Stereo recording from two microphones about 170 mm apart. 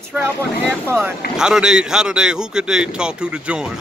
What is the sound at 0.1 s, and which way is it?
Speech, 15° right (ahead or behind).